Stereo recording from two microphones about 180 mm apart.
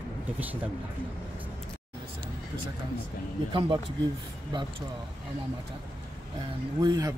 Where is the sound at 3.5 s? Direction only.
30° right (ahead or behind).